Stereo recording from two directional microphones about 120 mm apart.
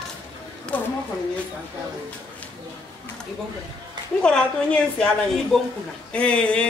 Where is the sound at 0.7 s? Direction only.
15° left (ahead or behind).